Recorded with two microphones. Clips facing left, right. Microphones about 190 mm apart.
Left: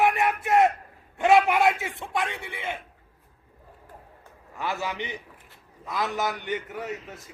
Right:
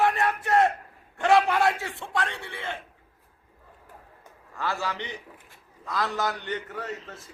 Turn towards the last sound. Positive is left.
turn(degrees=15)  # may be behind; listen again after turning